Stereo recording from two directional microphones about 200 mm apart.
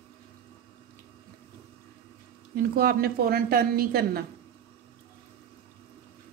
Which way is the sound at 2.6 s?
50° right (ahead or behind).